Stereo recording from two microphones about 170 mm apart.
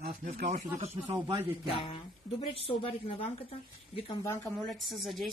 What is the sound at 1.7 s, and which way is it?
A woman's voice, 35° left (ahead or behind).